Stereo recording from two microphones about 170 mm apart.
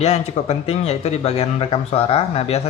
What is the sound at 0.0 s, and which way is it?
Speech, 40° left (ahead or behind).